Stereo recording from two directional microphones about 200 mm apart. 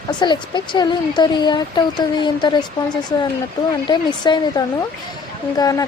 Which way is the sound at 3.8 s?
20° left (ahead or behind).